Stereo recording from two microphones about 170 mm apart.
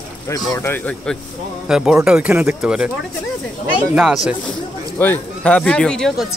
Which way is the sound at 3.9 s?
5° right (ahead or behind).